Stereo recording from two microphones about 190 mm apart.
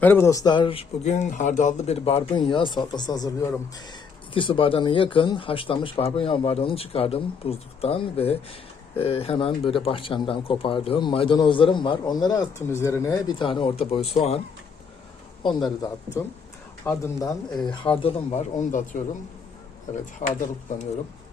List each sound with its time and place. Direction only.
0.0 s speech: 10° left (ahead or behind); by 14.2 s 30° left (ahead or behind)
15.4 s speech: 20° left (ahead or behind)
17.7 s speech: 30° left (ahead or behind)
20.2 s speech: 35° left (ahead or behind)